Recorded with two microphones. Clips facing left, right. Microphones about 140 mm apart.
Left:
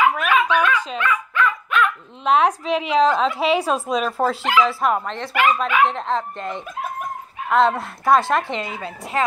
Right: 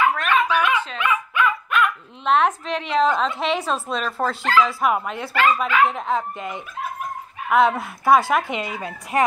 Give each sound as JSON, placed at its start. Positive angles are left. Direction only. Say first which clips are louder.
{"t": 0.0, "sound": "dog", "louder": "left 1 dB", "side_deg": 10}
{"t": 0.5, "sound": "dog", "louder": "left 1 dB", "side_deg": -10}
{"t": 1.7, "sound": "speech", "louder": "left 1 dB", "side_deg": 0}
{"t": 4.8, "sound": "speech", "louder": "even", "side_deg": -5}
{"t": 5.3, "sound": "speech", "louder": "left 1 dB", "side_deg": 15}
{"t": 5.9, "sound": "speech", "louder": "even", "side_deg": -5}
{"t": 8.6, "sound": "speech", "louder": "even", "side_deg": 25}